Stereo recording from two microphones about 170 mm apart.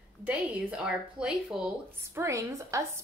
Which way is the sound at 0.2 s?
5° right (ahead or behind).